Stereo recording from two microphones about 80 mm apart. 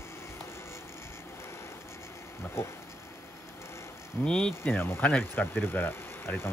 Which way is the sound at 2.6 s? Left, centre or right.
Left.